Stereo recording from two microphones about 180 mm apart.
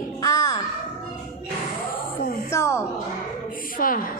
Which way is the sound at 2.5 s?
15° left (ahead or behind).